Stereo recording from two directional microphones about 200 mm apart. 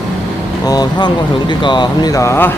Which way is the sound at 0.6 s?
20° left (ahead or behind).